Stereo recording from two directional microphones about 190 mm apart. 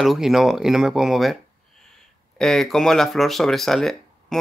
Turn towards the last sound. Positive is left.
turn(degrees=0)  # may be behind; listen again after turning